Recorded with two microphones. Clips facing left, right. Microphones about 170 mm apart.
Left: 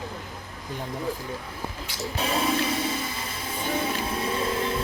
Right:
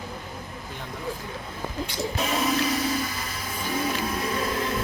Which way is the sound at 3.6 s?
25° left (ahead or behind).